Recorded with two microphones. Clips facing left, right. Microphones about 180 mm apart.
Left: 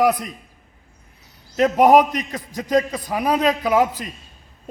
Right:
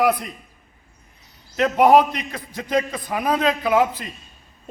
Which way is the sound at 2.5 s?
40° left (ahead or behind).